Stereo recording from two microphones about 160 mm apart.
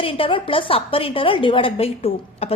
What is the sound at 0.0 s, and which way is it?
A woman's voice, 35° left (ahead or behind).